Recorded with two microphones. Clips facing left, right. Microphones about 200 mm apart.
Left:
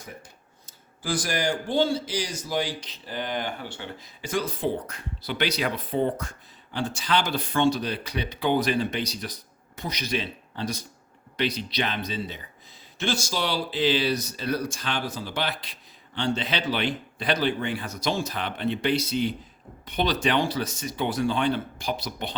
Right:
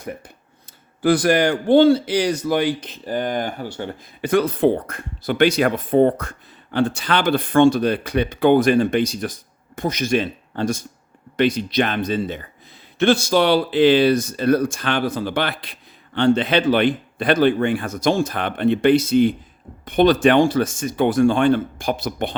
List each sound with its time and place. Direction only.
1.0 s a man's voice: 60° right (ahead or behind)